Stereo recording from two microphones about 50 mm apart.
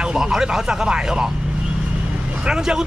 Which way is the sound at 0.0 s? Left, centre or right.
Centre.